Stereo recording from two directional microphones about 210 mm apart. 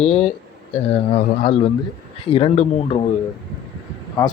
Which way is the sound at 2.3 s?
25° left (ahead or behind).